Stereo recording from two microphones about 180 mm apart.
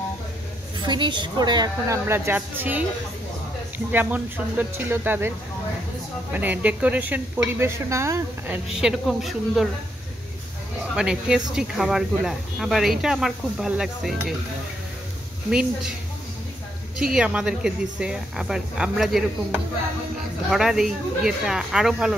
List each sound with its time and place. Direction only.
0.8 s a woman's voice: 25° right (ahead or behind)
6.3 s speech: 10° right (ahead or behind)
8.8 s speech: centre (ahead or behind)
11.0 s speech: 5° right (ahead or behind)
17.0 s speech: 5° right (ahead or behind)